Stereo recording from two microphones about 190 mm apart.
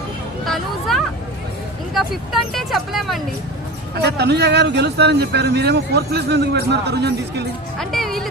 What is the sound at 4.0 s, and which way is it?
Speech, 60° right (ahead or behind).